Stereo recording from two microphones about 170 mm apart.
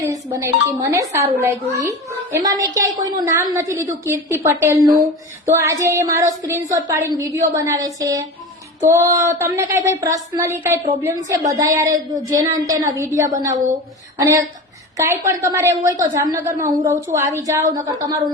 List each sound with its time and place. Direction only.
0.0 s speech: 20° right (ahead or behind)